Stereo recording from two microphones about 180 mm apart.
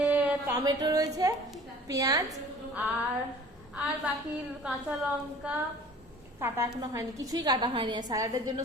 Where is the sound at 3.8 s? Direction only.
10° right (ahead or behind).